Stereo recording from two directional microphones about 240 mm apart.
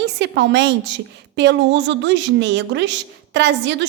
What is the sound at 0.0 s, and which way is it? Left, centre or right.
A woman's voice, right.